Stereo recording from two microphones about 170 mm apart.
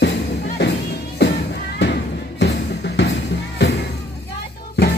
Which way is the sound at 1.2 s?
80° left.